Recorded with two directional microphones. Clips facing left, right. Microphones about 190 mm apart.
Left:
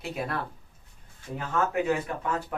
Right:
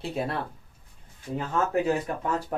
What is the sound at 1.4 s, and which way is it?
Speech, 35° right (ahead or behind).